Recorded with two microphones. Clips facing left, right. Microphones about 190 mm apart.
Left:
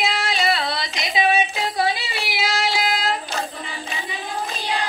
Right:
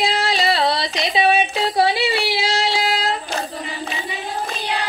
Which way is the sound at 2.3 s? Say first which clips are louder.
Right 3 dB; 30° right (ahead or behind).